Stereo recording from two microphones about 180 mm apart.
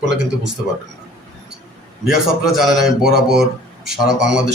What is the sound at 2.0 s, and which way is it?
Speech, centre (ahead or behind).